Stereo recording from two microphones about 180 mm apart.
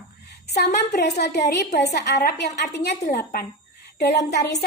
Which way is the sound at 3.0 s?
55° left (ahead or behind).